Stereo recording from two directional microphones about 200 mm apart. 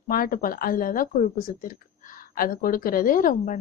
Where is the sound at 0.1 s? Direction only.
45° left (ahead or behind).